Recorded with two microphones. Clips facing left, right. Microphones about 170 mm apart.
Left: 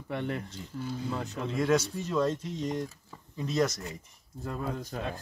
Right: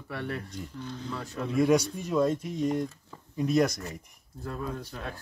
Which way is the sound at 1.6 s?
10° right (ahead or behind).